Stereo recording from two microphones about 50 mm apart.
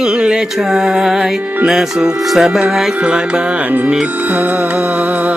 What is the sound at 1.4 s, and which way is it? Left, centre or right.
Music, right.